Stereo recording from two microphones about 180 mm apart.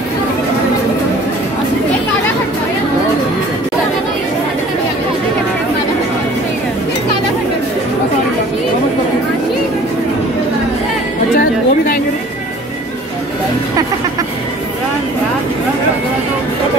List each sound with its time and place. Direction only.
11.3 s music: 50° left (ahead or behind)